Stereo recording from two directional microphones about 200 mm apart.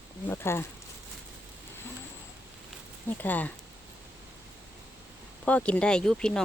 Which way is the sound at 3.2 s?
10° left (ahead or behind).